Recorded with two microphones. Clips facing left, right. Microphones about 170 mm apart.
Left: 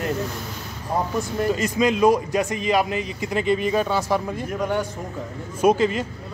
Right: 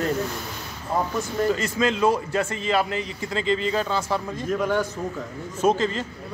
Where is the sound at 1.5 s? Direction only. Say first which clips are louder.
Left 5 dB; 15° left (ahead or behind).